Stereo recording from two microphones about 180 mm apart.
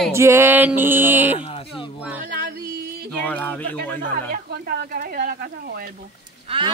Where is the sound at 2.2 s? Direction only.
50° right (ahead or behind).